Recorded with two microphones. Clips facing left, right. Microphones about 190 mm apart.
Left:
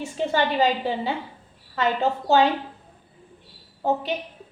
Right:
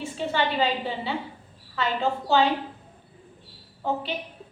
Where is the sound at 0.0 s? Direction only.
45° left (ahead or behind).